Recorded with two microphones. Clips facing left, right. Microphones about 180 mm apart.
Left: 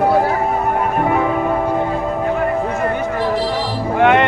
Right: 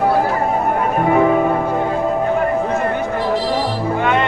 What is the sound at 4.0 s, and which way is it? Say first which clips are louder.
Music: left 6 dB; 65° left (ahead or behind).